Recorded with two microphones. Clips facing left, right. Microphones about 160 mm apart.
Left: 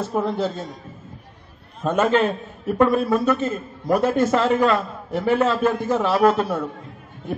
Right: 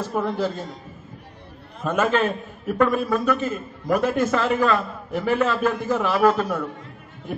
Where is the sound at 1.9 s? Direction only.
30° left (ahead or behind).